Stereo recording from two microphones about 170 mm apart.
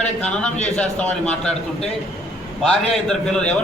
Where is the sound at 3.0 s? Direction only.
5° left (ahead or behind).